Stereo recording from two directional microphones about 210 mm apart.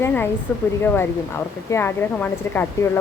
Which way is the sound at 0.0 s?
10° left (ahead or behind).